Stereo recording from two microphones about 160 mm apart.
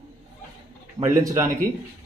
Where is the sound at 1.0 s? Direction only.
20° right (ahead or behind).